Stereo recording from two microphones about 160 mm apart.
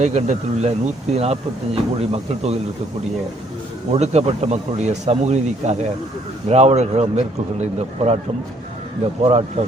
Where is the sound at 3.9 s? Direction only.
45° right (ahead or behind).